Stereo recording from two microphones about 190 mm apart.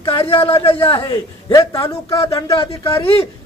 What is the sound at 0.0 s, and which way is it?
A man's voice, 30° left (ahead or behind).